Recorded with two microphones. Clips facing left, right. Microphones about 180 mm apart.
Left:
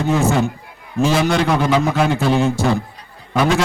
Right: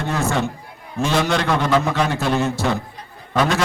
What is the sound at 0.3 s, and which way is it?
A man's voice, centre (ahead or behind).